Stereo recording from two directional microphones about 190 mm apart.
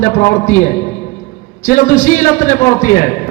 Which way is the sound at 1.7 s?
45° left (ahead or behind).